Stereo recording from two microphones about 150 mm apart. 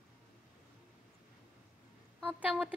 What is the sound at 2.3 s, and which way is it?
Speech, 10° right (ahead or behind).